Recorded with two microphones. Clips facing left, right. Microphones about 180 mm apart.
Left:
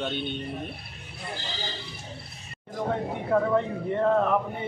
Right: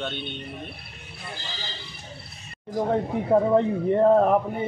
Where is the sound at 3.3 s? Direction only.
35° right (ahead or behind).